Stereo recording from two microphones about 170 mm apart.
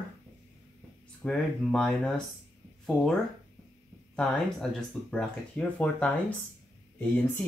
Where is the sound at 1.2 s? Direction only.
5° left (ahead or behind).